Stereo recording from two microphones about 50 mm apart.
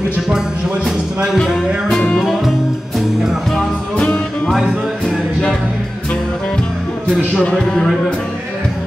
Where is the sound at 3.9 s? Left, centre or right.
Left.